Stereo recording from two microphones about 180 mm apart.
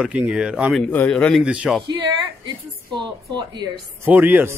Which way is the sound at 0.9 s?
10° left (ahead or behind).